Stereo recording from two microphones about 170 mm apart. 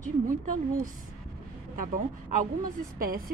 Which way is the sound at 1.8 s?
50° right (ahead or behind).